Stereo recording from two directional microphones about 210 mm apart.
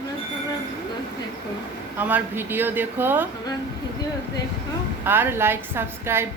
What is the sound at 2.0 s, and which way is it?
A woman's voice, 10° right (ahead or behind).